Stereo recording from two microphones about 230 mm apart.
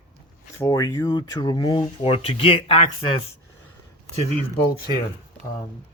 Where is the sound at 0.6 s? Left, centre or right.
Centre.